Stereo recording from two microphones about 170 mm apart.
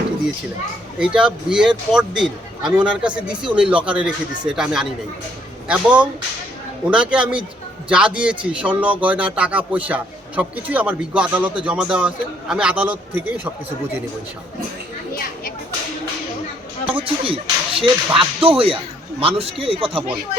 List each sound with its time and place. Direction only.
0.9 s speech: 5° right (ahead or behind)
3.2 s speech: 25° right (ahead or behind)
3.5 s speech: 5° right (ahead or behind)
16.9 s speech: 30° right (ahead or behind)